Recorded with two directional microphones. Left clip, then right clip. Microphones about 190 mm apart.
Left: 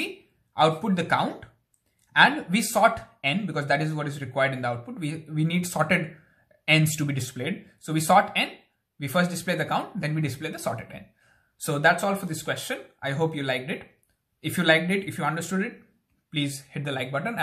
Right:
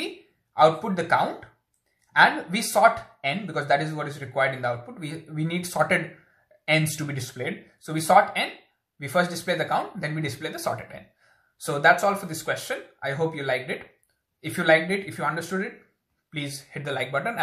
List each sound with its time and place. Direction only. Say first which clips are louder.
0.6 s speech: right 3 dB; 20° left (ahead or behind)